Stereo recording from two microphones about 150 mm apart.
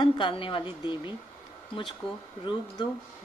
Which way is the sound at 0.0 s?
35° left (ahead or behind).